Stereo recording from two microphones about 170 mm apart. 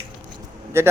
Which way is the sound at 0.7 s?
15° right (ahead or behind).